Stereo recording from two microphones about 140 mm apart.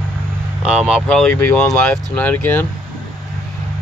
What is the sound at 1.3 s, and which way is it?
Speech, 15° left (ahead or behind).